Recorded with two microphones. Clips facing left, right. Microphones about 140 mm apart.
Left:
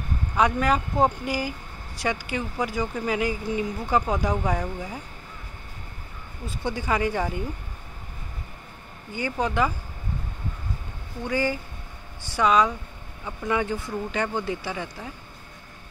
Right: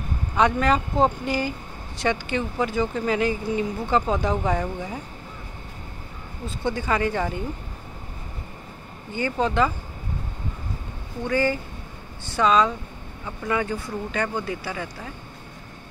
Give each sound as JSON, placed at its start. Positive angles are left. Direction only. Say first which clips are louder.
{"t": 0.4, "sound": "speech", "louder": "right 2 dB", "side_deg": 10}
{"t": 4.5, "sound": "speech", "louder": "right 2 dB", "side_deg": 0}
{"t": 6.4, "sound": "speech", "louder": "right 3 dB", "side_deg": 10}
{"t": 9.1, "sound": "speech", "louder": "right 3 dB", "side_deg": 10}
{"t": 11.2, "sound": "speech", "louder": "right 3 dB", "side_deg": 10}